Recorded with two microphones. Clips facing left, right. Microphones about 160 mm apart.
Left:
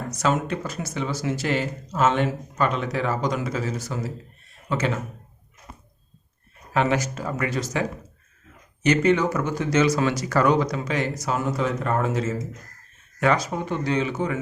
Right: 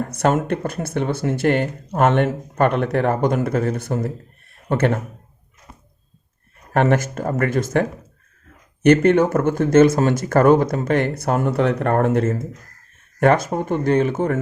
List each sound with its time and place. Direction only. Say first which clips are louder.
0.0 s speech: right 5 dB; 55° right (ahead or behind)
6.7 s speech: right 5 dB; 50° right (ahead or behind)